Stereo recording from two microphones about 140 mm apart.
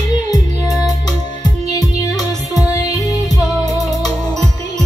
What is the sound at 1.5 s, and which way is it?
Music, 30° left (ahead or behind).